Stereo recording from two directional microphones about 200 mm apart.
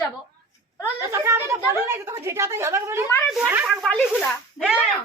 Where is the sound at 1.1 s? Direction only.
15° right (ahead or behind).